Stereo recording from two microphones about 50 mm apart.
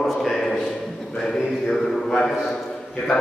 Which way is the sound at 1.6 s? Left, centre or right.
Centre.